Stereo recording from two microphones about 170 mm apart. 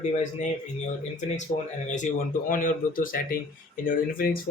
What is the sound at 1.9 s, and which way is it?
A man's voice, 45° left (ahead or behind).